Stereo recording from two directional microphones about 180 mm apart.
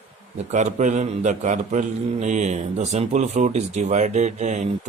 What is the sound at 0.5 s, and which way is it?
A man's voice, 40° right (ahead or behind).